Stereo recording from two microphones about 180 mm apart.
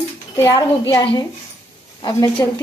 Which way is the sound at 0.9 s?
25° left (ahead or behind).